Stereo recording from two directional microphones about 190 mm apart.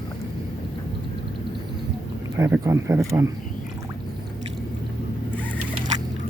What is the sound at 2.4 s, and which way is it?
Speech, 10° right (ahead or behind).